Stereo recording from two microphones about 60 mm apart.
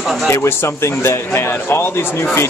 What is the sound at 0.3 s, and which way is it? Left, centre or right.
Speech, left.